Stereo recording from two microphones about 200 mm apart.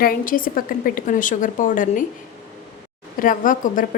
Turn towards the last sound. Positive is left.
turn(degrees=40)  # may be behind; listen again after turning